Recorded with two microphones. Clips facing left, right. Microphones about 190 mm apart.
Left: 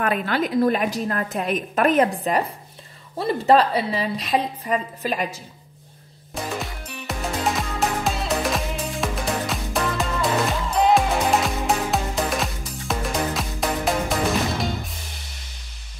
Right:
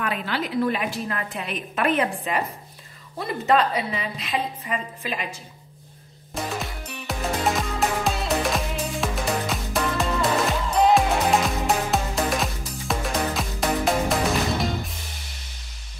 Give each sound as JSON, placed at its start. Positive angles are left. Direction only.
{"t": 0.0, "sound": "a woman's voice", "side_deg": 50}
{"t": 6.4, "sound": "music", "side_deg": 0}